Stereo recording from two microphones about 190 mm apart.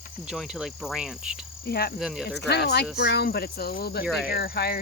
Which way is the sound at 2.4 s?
60° left (ahead or behind).